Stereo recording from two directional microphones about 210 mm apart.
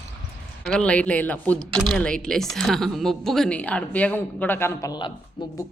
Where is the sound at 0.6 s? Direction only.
5° left (ahead or behind); by 5.5 s 20° left (ahead or behind).